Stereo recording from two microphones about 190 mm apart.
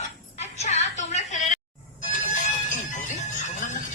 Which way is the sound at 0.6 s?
35° left (ahead or behind).